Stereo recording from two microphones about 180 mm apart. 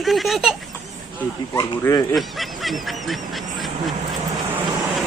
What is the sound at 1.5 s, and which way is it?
Speech, 20° left (ahead or behind).